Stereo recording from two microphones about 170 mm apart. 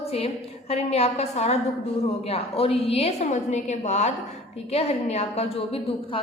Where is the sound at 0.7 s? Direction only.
40° left (ahead or behind).